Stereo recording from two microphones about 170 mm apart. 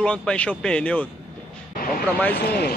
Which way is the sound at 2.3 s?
70° left (ahead or behind).